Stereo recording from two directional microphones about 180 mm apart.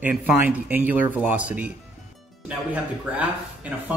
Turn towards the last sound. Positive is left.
turn(degrees=-10)  # may be behind; listen again after turning